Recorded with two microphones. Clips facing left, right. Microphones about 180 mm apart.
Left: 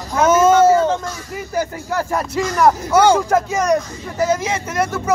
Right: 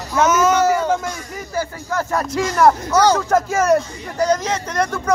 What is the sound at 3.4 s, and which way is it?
Speech, 5° right (ahead or behind).